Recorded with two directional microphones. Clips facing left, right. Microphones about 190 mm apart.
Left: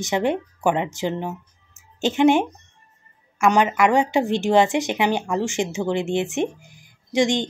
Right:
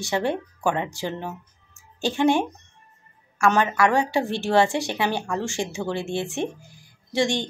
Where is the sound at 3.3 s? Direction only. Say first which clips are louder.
Left 2 dB; 15° left (ahead or behind).